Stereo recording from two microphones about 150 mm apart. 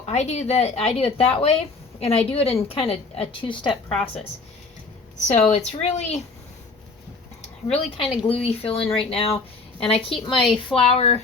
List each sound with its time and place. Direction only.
0.0 s a woman's voice: 45° left (ahead or behind)
5.3 s speech: 50° left (ahead or behind)
7.7 s a woman's voice: 40° left (ahead or behind)